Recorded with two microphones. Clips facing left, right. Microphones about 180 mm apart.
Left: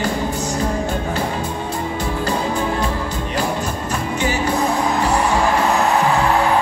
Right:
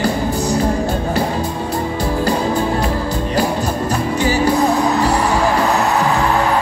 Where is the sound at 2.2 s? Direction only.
35° right (ahead or behind).